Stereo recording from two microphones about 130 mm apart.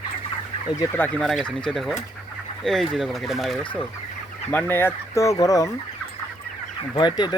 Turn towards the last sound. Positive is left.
turn(degrees=35)  # may be behind; listen again after turning